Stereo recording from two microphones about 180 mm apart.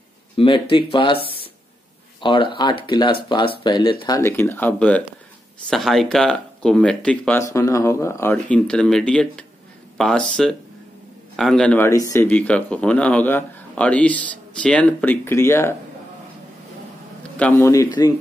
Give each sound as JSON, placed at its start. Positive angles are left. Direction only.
{"t": 0.4, "sound": "speech", "side_deg": 30}
{"t": 4.2, "sound": "speech", "side_deg": 15}
{"t": 17.6, "sound": "speech", "side_deg": 20}